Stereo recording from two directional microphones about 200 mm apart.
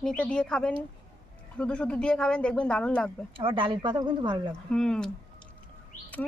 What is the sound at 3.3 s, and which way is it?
A woman's voice, 25° right (ahead or behind).